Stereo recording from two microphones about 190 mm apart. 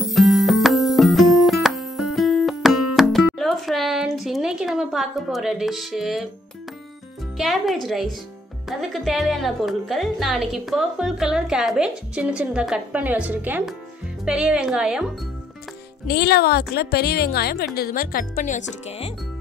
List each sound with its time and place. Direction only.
0.0 s music: centre (ahead or behind)
7.3 s speech: centre (ahead or behind)
16.1 s a woman's voice: 55° left (ahead or behind); by 19.1 s 30° left (ahead or behind)